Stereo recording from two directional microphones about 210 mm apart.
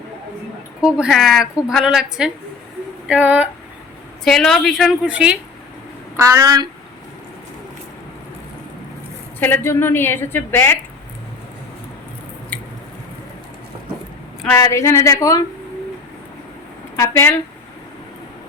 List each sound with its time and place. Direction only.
0.8 s a woman's voice: 5° right (ahead or behind)
9.4 s a woman's voice: 10° left (ahead or behind)
14.4 s a woman's voice: 15° left (ahead or behind)
17.0 s a woman's voice: 10° left (ahead or behind)